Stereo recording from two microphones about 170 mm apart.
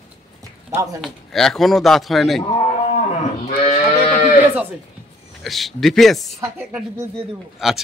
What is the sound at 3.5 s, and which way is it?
Moo, 45° left (ahead or behind).